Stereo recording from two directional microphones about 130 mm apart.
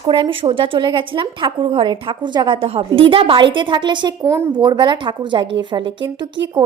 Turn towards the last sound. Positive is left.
turn(degrees=-40)  # may be behind; listen again after turning